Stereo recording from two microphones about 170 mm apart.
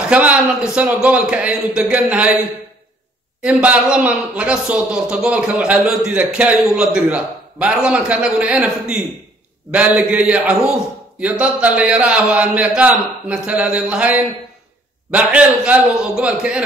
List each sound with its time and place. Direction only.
0.1 s a man's voice: 5° right (ahead or behind)
3.4 s a man's voice: 5° right (ahead or behind)